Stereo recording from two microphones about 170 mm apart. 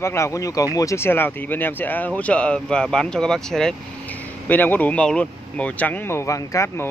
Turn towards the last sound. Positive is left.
turn(degrees=15)  # may be behind; listen again after turning